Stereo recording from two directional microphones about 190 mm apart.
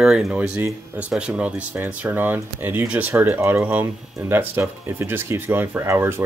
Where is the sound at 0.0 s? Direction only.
Centre (ahead or behind).